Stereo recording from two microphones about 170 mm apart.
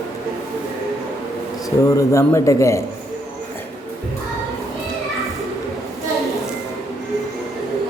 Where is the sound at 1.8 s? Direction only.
20° left (ahead or behind).